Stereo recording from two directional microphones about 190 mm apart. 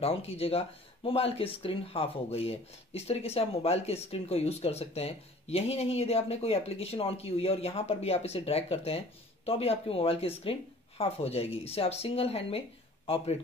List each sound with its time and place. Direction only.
0.0 s speech: 30° left (ahead or behind)